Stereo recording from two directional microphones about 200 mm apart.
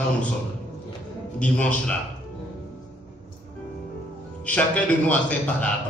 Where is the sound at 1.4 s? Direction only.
5° left (ahead or behind).